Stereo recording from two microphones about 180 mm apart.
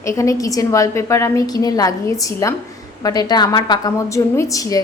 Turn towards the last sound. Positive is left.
turn(degrees=20)  # may be behind; listen again after turning